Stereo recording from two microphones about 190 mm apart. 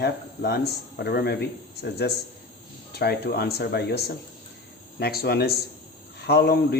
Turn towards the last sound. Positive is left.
turn(degrees=60)  # may be behind; listen again after turning